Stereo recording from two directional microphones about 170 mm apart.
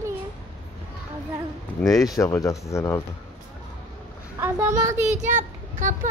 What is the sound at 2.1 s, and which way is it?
Speech, 20° left (ahead or behind).